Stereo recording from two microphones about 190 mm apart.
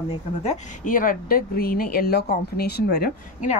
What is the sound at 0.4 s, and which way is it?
Speech, 40° left (ahead or behind).